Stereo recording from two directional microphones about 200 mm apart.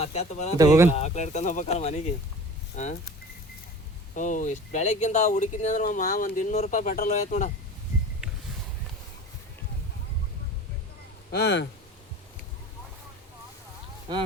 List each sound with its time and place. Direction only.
0.0 s speech: 35° left (ahead or behind)
0.5 s speech: 15° right (ahead or behind)
0.9 s speech: 35° left (ahead or behind)
4.1 s speech: 40° left (ahead or behind)
8.2 s a sound: 5° right (ahead or behind)
11.3 s speech: 55° left (ahead or behind)